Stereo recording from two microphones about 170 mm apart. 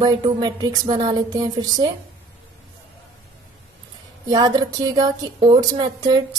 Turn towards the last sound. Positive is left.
turn(degrees=-25)  # may be behind; listen again after turning